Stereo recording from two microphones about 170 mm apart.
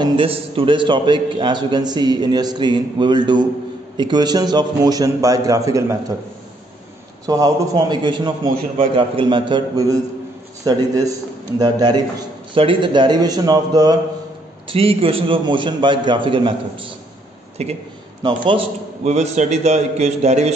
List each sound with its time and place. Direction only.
0.0 s a man's voice: 30° right (ahead or behind)
7.2 s a man's voice: 20° right (ahead or behind)
19.0 s a man's voice: 40° right (ahead or behind)